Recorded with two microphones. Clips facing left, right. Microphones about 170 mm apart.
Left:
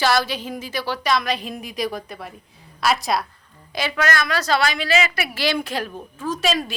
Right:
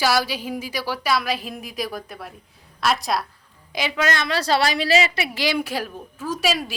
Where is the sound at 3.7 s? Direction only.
20° right (ahead or behind).